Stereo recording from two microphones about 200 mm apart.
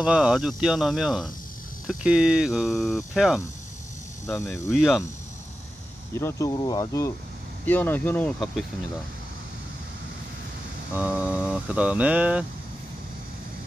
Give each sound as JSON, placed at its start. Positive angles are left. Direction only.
{"t": 0.0, "sound": "speech", "side_deg": -5}
{"t": 4.3, "sound": "speech", "side_deg": 10}
{"t": 4.6, "sound": "speech", "side_deg": 0}
{"t": 6.1, "sound": "speech", "side_deg": 15}
{"t": 11.0, "sound": "a sound", "side_deg": -5}